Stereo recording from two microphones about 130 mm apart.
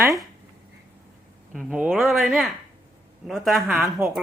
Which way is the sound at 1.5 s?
5° right (ahead or behind).